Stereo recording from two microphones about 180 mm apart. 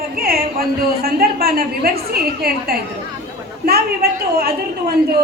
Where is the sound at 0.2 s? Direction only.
55° right (ahead or behind).